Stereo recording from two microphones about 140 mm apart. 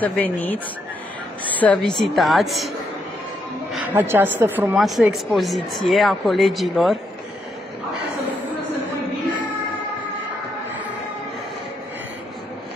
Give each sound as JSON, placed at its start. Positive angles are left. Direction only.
{"t": 0.0, "sound": "a woman's voice", "side_deg": 10}
{"t": 3.7, "sound": "a woman's voice", "side_deg": -15}
{"t": 4.7, "sound": "speech", "side_deg": 0}